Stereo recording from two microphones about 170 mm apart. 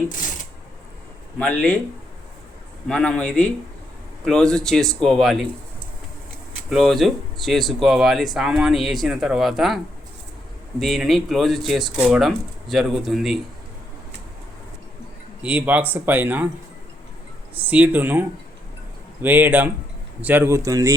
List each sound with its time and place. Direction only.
1.4 s speech: 5° left (ahead or behind)
2.8 s speech: 5° left (ahead or behind)
6.7 s speech: centre (ahead or behind)
15.4 s speech: 10° right (ahead or behind)
17.5 s speech: 10° right (ahead or behind)